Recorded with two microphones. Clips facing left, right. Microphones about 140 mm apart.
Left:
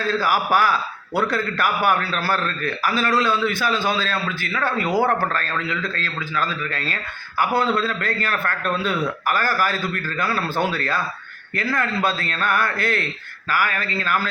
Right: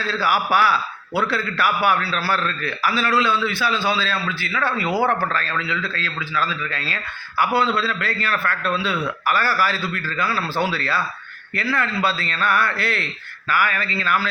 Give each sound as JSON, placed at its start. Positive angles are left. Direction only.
{"t": 0.0, "sound": "a man's voice", "side_deg": 45}